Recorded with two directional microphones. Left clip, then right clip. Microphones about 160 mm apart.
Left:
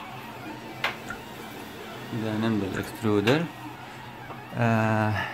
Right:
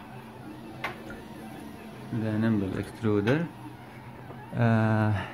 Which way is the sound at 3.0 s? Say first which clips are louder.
Left 3 dB; 15° left (ahead or behind).